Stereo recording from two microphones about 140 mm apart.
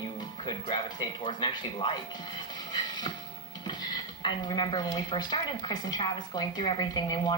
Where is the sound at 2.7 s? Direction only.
30° left (ahead or behind).